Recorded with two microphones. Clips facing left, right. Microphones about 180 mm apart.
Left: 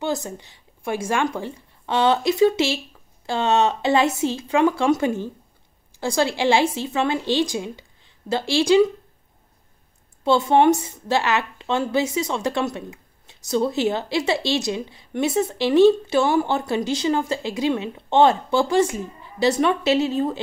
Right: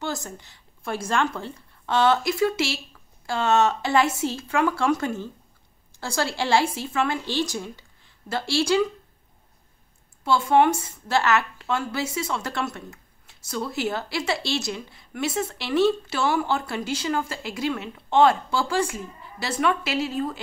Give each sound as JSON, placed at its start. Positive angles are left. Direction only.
{"t": 0.0, "sound": "a woman's voice", "side_deg": 15}
{"t": 10.2, "sound": "speech", "side_deg": 20}